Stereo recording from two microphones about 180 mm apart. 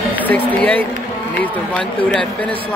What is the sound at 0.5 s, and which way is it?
Speech, 10° left (ahead or behind).